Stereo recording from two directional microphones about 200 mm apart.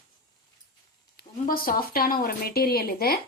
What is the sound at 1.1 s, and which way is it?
A woman's voice, 50° left (ahead or behind).